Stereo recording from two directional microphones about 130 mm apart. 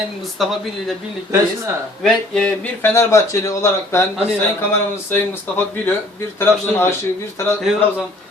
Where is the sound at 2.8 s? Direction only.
20° left (ahead or behind).